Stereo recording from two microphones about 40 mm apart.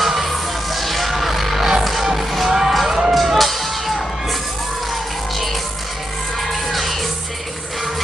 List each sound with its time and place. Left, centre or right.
0.0 s music: centre
3.2 s music: centre
6.5 s music: centre